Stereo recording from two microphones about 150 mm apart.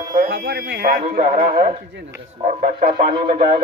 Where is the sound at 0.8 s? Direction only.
90° right.